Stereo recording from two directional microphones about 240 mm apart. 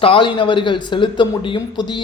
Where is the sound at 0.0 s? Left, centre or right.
Left.